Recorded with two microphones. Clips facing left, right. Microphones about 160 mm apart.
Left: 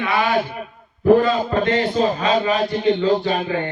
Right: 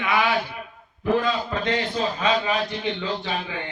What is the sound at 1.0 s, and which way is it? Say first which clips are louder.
A man's voice: left 8 dB; 45° left (ahead or behind).